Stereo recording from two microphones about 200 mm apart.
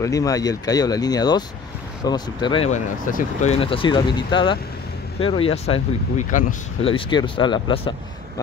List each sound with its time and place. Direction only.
0.0 s speech: 15° left (ahead or behind)
3.1 s speech: 40° left (ahead or behind)